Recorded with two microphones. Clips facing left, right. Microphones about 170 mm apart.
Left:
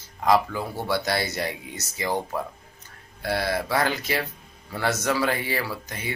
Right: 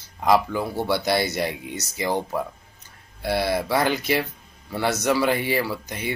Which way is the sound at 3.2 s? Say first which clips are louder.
Right 3 dB; 10° right (ahead or behind).